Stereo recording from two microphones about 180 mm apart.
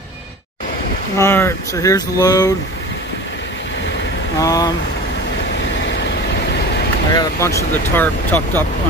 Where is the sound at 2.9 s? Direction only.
75° left (ahead or behind).